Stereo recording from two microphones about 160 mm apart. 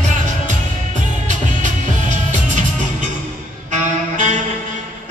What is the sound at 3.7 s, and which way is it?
Saxophone, 50° right (ahead or behind).